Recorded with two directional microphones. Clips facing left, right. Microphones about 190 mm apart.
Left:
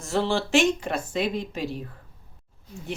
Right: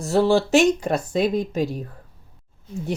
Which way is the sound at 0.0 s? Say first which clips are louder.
Right 7 dB; 40° right (ahead or behind).